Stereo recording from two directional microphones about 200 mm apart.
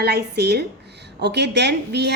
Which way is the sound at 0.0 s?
55° right (ahead or behind).